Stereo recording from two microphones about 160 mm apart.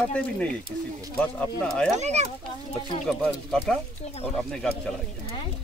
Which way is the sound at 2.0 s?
45° right (ahead or behind).